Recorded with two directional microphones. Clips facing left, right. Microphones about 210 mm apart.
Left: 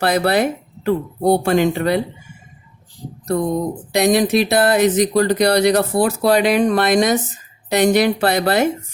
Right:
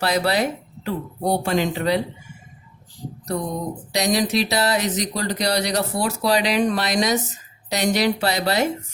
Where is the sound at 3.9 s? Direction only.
55° left (ahead or behind).